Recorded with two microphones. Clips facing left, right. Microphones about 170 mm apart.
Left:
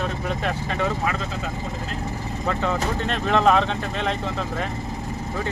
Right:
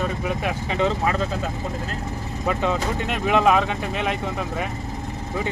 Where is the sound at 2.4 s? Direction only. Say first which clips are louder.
Right 1 dB; 15° right (ahead or behind).